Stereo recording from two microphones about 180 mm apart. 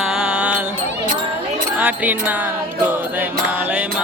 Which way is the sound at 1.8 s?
10° right (ahead or behind).